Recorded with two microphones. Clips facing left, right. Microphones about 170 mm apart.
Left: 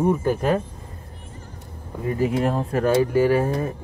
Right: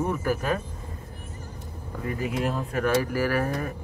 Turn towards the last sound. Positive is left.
turn(degrees=25)  # may be behind; listen again after turning